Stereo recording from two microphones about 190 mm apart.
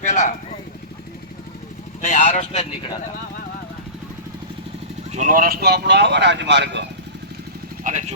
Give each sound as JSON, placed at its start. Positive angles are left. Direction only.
{"t": 0.0, "sound": "vehicle", "side_deg": 40}
{"t": 2.0, "sound": "vehicle", "side_deg": 45}
{"t": 5.1, "sound": "speech", "side_deg": -45}
{"t": 7.9, "sound": "speech", "side_deg": -40}